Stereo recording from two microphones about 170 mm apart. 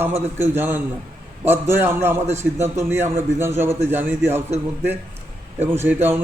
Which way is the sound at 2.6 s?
15° right (ahead or behind).